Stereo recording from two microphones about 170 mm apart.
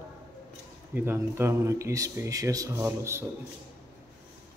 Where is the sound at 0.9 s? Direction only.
15° right (ahead or behind).